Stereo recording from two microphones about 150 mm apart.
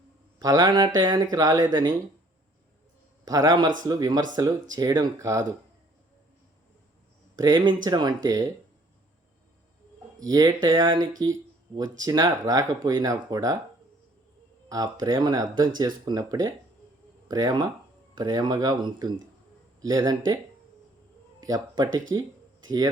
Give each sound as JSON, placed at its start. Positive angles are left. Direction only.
{"t": 0.3, "sound": "speech", "side_deg": -25}
{"t": 3.2, "sound": "speech", "side_deg": -25}
{"t": 7.3, "sound": "speech", "side_deg": -25}
{"t": 10.2, "sound": "speech", "side_deg": -25}
{"t": 14.7, "sound": "speech", "side_deg": -25}
{"t": 21.4, "sound": "speech", "side_deg": -25}